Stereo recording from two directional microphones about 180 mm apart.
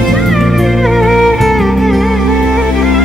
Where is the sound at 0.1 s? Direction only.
Centre (ahead or behind).